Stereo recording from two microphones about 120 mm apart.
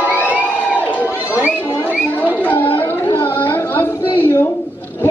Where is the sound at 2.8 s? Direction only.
15° left (ahead or behind).